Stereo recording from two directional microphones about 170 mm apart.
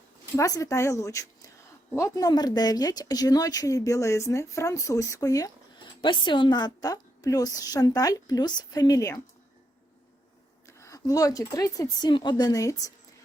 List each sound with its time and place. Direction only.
0.3 s speech: 20° left (ahead or behind)
10.7 s speech: 15° left (ahead or behind)